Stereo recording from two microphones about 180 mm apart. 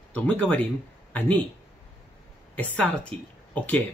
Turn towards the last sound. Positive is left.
turn(degrees=10)  # may be behind; listen again after turning